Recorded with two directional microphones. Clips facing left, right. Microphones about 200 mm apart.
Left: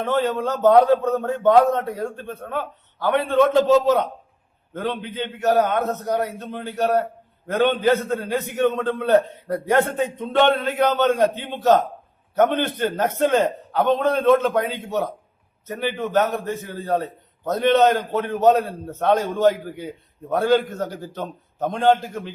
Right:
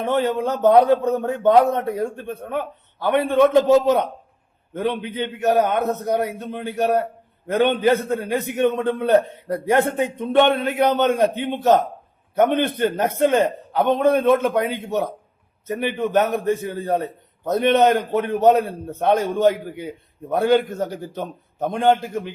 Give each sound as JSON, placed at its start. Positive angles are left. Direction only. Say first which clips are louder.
{"t": 0.0, "sound": "a man's voice", "louder": "right 1 dB", "side_deg": -15}